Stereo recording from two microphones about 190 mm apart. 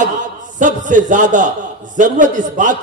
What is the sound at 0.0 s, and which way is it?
A man's voice, 40° right (ahead or behind).